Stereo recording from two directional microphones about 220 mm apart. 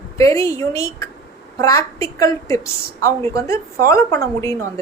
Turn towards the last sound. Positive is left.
turn(degrees=15)  # may be behind; listen again after turning